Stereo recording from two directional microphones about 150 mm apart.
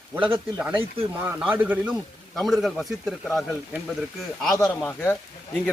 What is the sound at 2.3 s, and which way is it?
Speech, centre (ahead or behind).